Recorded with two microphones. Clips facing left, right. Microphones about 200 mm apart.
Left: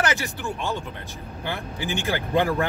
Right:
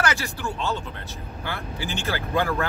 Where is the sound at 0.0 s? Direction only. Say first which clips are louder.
Left 1 dB; 20° left (ahead or behind).